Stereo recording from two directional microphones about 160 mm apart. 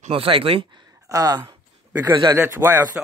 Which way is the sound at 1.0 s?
25° right (ahead or behind).